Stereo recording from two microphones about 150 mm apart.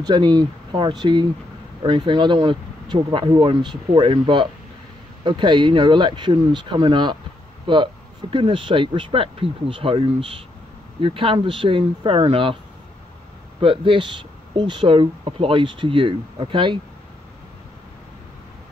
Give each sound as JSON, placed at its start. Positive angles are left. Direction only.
{"t": 0.0, "sound": "speech", "side_deg": -30}
{"t": 13.6, "sound": "speech", "side_deg": -35}